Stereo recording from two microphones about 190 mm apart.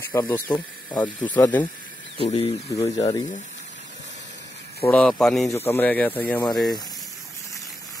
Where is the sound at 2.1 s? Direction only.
30° left (ahead or behind).